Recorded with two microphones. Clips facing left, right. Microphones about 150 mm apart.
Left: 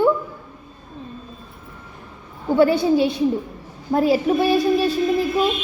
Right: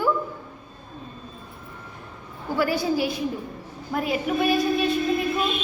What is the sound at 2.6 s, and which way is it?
A woman's voice, 25° left (ahead or behind).